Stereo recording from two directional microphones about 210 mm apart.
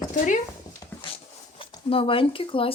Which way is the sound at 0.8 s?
20° left (ahead or behind).